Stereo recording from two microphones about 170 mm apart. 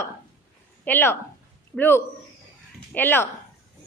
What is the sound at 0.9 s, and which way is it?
A woman's voice, 10° left (ahead or behind).